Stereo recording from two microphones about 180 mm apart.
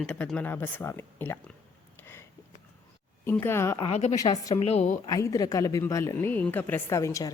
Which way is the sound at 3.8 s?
35° left (ahead or behind).